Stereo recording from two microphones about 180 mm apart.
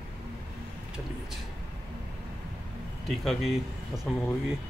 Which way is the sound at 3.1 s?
Centre (ahead or behind).